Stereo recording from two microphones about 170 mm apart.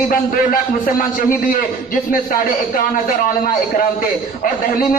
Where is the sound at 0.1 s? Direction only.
55° left (ahead or behind).